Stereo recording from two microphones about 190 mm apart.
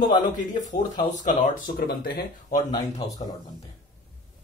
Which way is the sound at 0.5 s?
40° left (ahead or behind).